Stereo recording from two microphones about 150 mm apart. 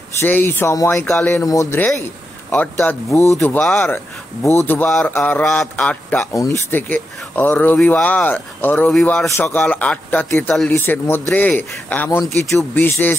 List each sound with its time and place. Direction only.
0.2 s speech: 15° left (ahead or behind)
1.4 s speech: 20° left (ahead or behind)
3.5 s speech: 5° left (ahead or behind)
3.9 s speech: 20° left (ahead or behind)
4.6 s speech: 10° left (ahead or behind)
6.3 s speech: 20° left (ahead or behind)